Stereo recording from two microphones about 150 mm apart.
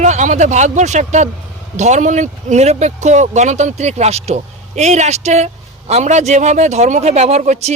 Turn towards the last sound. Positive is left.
turn(degrees=-50)  # may be behind; listen again after turning